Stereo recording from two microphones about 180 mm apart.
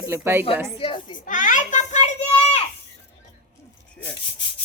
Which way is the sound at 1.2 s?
45° left (ahead or behind).